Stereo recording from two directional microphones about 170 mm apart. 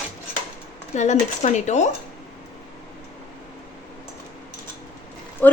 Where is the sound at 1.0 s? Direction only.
45° left (ahead or behind).